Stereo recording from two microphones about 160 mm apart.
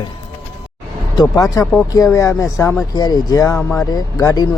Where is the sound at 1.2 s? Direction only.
20° left (ahead or behind).